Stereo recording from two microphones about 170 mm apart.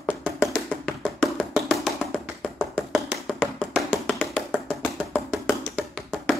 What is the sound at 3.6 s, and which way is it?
Tap, 5° right (ahead or behind).